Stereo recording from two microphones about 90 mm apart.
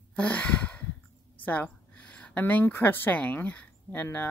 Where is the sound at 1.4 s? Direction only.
15° left (ahead or behind).